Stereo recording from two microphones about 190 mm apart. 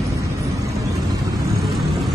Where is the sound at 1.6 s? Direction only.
Centre (ahead or behind).